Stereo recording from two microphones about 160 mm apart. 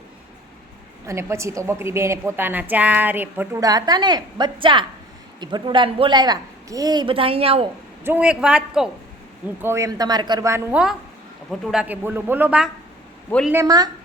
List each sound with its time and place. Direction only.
1.0 s a woman's voice: 15° right (ahead or behind); by 7.7 s 35° right (ahead or behind)
8.0 s a man's voice: 10° right (ahead or behind)
9.6 s a woman's voice: 15° right (ahead or behind)
11.6 s a woman's voice: 5° right (ahead or behind)
13.5 s a woman's voice: 20° right (ahead or behind)